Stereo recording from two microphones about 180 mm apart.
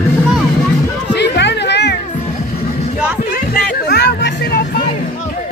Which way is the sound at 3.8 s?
70° left (ahead or behind).